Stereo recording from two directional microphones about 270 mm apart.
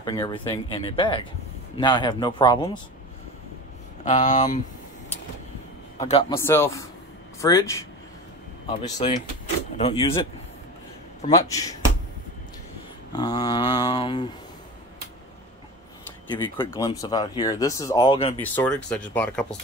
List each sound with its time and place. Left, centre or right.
0.0 s speech: centre
4.0 s speech: left
5.9 s a man's voice: left
6.3 s speech: centre
8.8 s speech: left
11.2 s speech: centre
13.1 s speech: centre
16.4 s speech: centre
18.4 s speech: centre